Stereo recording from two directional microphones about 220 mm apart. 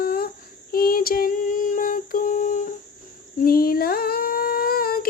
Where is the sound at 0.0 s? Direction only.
45° left (ahead or behind).